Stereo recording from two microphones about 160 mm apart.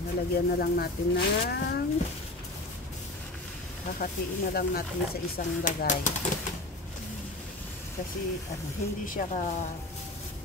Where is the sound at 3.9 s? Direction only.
65° left (ahead or behind).